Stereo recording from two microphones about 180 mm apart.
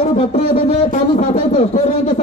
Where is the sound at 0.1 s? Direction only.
40° left (ahead or behind).